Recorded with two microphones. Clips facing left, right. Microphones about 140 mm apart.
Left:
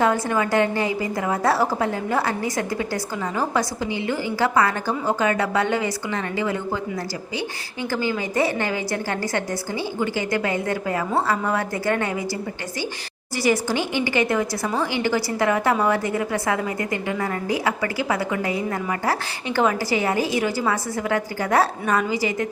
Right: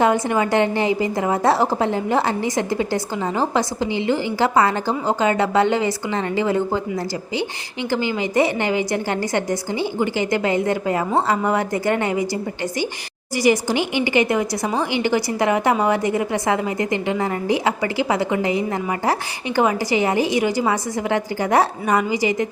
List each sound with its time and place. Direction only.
0.0 s a woman's voice: 20° right (ahead or behind)